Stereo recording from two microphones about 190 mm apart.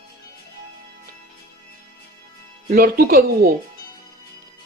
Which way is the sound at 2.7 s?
50° right (ahead or behind).